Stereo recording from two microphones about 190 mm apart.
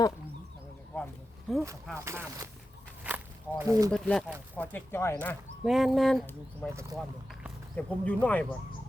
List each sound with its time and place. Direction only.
0.9 s a sound: 10° left (ahead or behind)
1.5 s speech: centre (ahead or behind)
2.0 s speech: 15° right (ahead or behind)
3.1 s walk: 5° right (ahead or behind)
3.6 s speech: 15° right (ahead or behind)
3.9 s speech: 5° left (ahead or behind)
5.6 s speech: centre (ahead or behind)
6.7 s speech: 15° right (ahead or behind)
7.8 s speech: 5° left (ahead or behind)